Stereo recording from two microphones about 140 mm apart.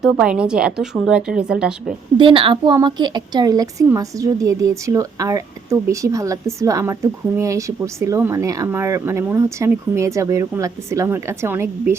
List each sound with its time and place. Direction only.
0.0 s a woman's voice: 5° right (ahead or behind)
2.1 s a woman's voice: 40° right (ahead or behind); by 11.9 s 15° right (ahead or behind)